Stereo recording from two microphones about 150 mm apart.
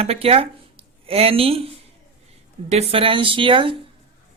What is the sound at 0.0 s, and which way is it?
Speech, 40° right (ahead or behind).